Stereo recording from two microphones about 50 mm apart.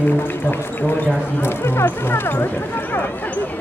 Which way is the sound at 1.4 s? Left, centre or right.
Left.